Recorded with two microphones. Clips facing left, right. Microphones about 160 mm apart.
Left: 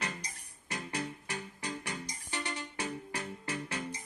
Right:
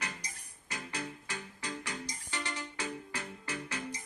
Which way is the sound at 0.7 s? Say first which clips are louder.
Left 3 dB; 30° left (ahead or behind).